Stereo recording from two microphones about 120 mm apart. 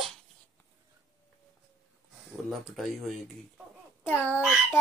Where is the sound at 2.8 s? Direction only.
Centre (ahead or behind).